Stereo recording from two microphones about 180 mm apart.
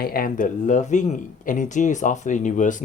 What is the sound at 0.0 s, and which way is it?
Speech, 55° left (ahead or behind).